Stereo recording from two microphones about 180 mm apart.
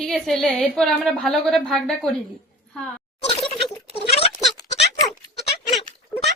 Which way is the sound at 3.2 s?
30° left (ahead or behind).